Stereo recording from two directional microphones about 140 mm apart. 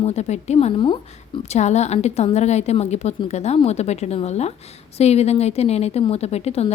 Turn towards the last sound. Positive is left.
turn(degrees=50)  # may be behind; listen again after turning